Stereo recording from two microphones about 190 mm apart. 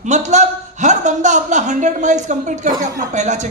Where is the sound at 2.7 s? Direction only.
20° right (ahead or behind).